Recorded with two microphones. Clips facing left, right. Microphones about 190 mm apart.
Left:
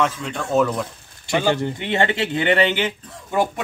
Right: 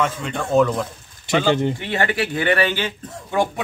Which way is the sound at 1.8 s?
25° left (ahead or behind).